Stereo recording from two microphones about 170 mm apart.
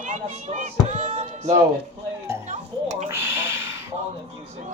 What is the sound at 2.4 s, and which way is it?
Music, 45° right (ahead or behind).